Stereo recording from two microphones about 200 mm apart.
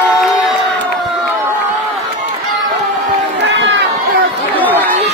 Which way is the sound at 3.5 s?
60° right (ahead or behind).